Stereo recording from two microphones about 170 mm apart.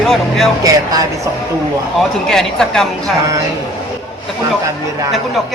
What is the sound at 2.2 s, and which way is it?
Speech, 5° left (ahead or behind).